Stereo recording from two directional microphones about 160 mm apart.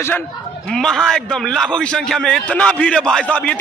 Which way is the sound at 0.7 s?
5° left (ahead or behind).